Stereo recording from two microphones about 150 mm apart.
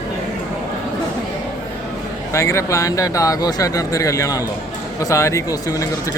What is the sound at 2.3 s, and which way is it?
Speech, 20° left (ahead or behind).